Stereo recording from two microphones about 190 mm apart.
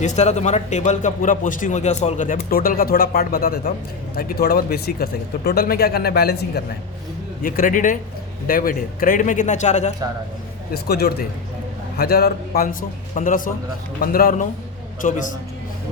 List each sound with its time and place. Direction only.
0.0 s a man's voice: 35° left (ahead or behind); by 6.6 s 60° left (ahead or behind)
7.4 s a man's voice: 45° left (ahead or behind)
10.7 s speech: 55° left (ahead or behind)
13.1 s a man's voice: 45° left (ahead or behind)